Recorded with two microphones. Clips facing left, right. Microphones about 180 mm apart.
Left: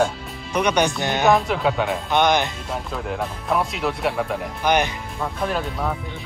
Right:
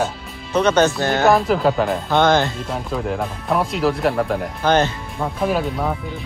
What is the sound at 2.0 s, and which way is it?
Speech, 15° left (ahead or behind).